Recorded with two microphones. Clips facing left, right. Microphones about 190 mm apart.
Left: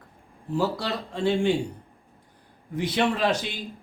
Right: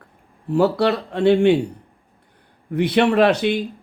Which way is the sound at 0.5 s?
65° right (ahead or behind).